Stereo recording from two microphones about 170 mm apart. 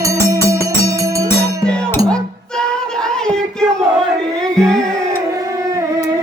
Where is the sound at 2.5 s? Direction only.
5° left (ahead or behind).